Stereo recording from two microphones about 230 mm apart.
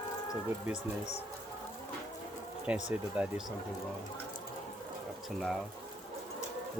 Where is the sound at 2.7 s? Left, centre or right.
Centre.